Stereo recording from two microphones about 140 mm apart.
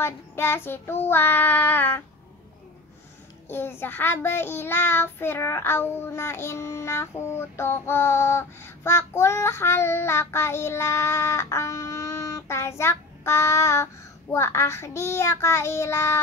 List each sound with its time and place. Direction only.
0.0 s child singing: 15° left (ahead or behind)
3.4 s child singing: 15° left (ahead or behind)